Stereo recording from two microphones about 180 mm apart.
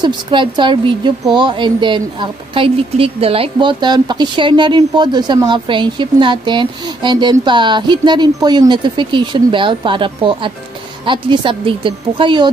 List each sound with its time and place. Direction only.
0.0 s speech: 25° right (ahead or behind)